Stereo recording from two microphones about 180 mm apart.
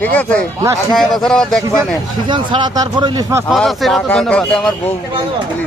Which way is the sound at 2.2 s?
25° right (ahead or behind).